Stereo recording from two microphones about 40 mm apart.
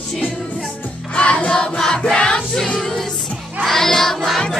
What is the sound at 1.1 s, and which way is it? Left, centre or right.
Music, left.